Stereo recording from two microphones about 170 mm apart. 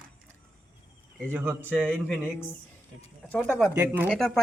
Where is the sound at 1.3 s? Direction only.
10° right (ahead or behind).